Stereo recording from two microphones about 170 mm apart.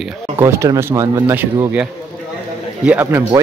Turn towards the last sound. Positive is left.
turn(degrees=-15)  # may be behind; listen again after turning